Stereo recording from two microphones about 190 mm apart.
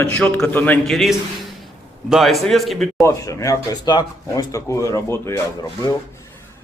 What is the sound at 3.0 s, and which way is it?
Speech, 15° left (ahead or behind).